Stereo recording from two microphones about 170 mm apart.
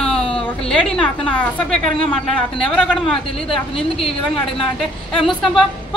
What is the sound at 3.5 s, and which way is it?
Speech, 35° left (ahead or behind).